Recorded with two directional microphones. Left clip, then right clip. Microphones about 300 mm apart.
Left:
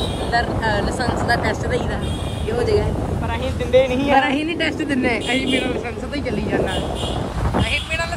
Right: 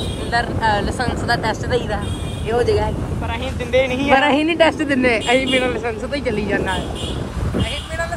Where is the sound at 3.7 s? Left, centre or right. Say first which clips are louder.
Left 2 dB; right.